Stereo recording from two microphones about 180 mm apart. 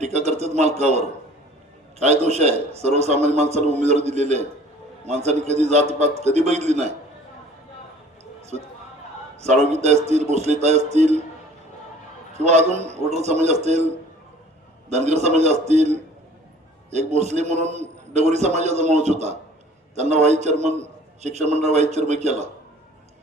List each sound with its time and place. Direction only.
0.0 s a sound: 40° right (ahead or behind)
2.0 s a man's voice: 35° right (ahead or behind)
8.2 s a sound: 35° right (ahead or behind)
9.4 s a man's voice: 40° right (ahead or behind)
12.3 s a man's voice: 40° right (ahead or behind)
14.8 s a man's voice: 40° right (ahead or behind)